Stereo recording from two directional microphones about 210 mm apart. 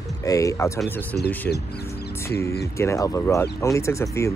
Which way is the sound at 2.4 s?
15° left (ahead or behind).